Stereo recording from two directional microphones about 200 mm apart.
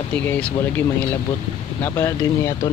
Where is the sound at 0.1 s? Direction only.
5° left (ahead or behind).